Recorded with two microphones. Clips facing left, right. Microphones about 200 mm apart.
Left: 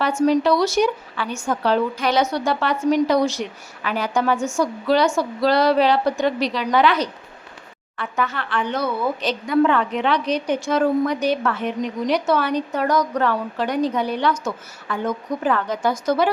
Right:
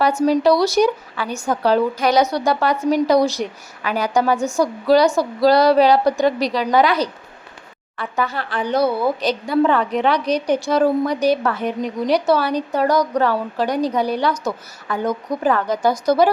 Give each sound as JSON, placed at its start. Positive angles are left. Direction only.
{"t": 0.0, "sound": "a woman's voice", "side_deg": -35}